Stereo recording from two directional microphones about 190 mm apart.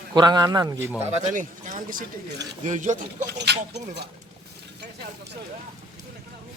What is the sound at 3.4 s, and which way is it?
Speech, 60° right (ahead or behind).